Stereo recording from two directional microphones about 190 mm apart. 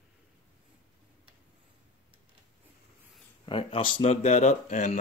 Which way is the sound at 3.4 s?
25° left (ahead or behind).